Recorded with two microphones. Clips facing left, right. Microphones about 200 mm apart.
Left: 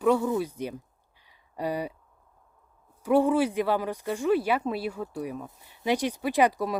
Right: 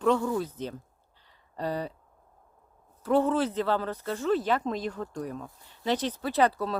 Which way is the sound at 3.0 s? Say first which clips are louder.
Left 2 dB; 10° left (ahead or behind).